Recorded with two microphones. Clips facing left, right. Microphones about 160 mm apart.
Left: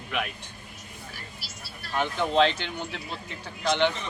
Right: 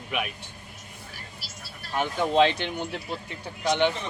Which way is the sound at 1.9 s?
15° right (ahead or behind).